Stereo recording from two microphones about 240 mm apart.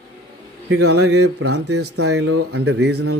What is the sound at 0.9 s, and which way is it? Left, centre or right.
Speech, right.